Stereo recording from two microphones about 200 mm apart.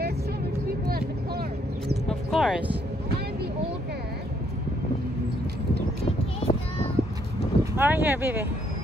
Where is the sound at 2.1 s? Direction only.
Centre (ahead or behind).